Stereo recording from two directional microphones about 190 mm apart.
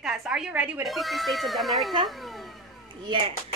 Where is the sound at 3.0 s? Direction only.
30° right (ahead or behind).